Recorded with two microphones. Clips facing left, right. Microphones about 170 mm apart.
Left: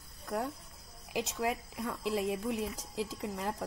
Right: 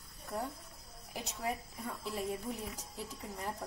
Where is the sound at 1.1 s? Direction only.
90° left.